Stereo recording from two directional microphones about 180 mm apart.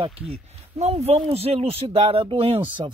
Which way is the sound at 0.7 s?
35° right (ahead or behind).